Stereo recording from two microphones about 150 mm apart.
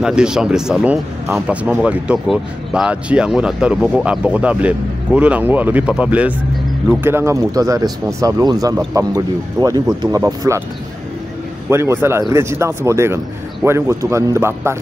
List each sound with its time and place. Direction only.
0.0 s speech: 5° right (ahead or behind); by 10.6 s 20° right (ahead or behind)
11.7 s speech: 15° right (ahead or behind)